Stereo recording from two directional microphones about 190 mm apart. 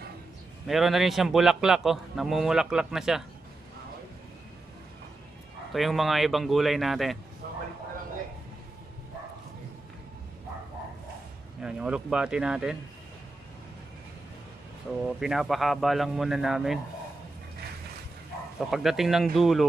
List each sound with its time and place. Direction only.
0.7 s a man's voice: centre (ahead or behind)
5.7 s a man's voice: centre (ahead or behind)
7.4 s vehicle: 50° right (ahead or behind)
11.6 s a man's voice: 5° right (ahead or behind)
15.1 s a man's voice: centre (ahead or behind)
18.6 s a man's voice: centre (ahead or behind)